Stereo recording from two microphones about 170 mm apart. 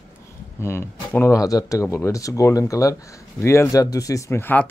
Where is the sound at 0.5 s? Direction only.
15° left (ahead or behind).